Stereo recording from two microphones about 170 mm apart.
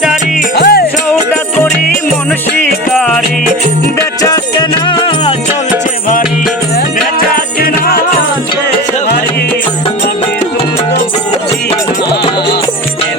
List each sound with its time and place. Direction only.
0.5 s music: 65° left (ahead or behind)
7.2 s music: 60° left (ahead or behind)